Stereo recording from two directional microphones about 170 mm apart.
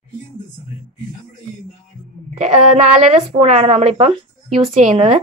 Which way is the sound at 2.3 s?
45° right (ahead or behind).